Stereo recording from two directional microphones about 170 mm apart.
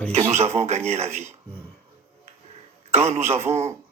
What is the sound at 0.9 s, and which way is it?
Speech, 40° right (ahead or behind).